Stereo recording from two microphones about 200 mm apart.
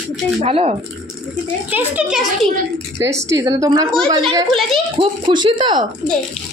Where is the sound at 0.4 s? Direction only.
30° right (ahead or behind).